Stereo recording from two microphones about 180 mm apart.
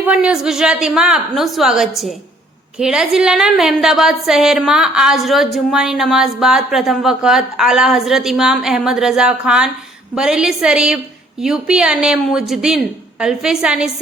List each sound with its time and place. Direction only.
0.0 s a woman's voice: 5° right (ahead or behind)